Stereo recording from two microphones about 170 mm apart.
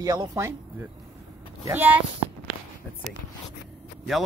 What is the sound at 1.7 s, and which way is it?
Speech, 10° right (ahead or behind).